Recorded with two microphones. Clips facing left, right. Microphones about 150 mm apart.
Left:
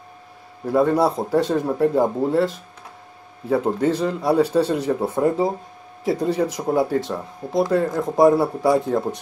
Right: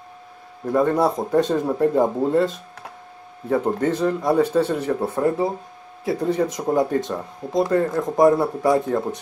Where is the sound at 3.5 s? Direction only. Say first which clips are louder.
Left 1 dB; 5° left (ahead or behind).